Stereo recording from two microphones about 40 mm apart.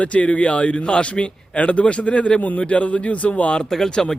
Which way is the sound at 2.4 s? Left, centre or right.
Left.